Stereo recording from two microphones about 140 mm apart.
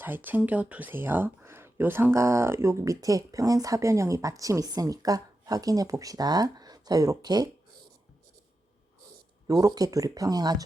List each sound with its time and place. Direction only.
0.0 s speech: 15° right (ahead or behind)
9.5 s speech: 25° right (ahead or behind)